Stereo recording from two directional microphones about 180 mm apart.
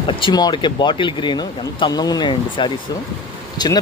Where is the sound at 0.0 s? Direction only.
30° left (ahead or behind).